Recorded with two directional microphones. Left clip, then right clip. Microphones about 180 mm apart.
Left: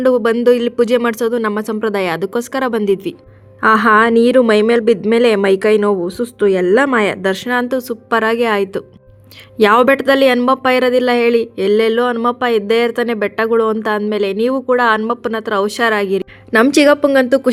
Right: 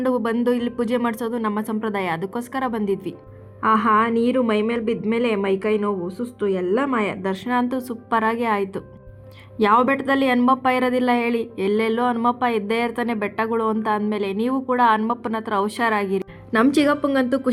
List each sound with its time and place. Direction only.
0.0 s speech: 30° left (ahead or behind)
3.6 s a woman's voice: 50° left (ahead or behind)